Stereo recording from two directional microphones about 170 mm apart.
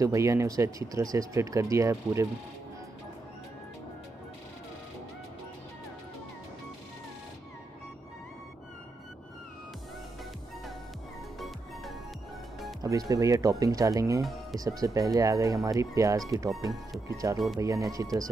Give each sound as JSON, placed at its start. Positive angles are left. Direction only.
{"t": 0.0, "sound": "speech", "side_deg": -20}
{"t": 11.3, "sound": "music", "side_deg": 0}
{"t": 12.8, "sound": "speech", "side_deg": -20}
{"t": 14.2, "sound": "speech", "side_deg": 0}
{"t": 14.6, "sound": "speech", "side_deg": -20}